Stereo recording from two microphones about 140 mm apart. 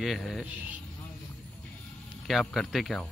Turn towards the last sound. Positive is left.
turn(degrees=0)  # may be behind; listen again after turning